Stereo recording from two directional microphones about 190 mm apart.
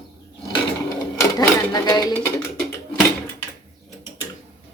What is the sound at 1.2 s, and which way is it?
Speech, 20° left (ahead or behind).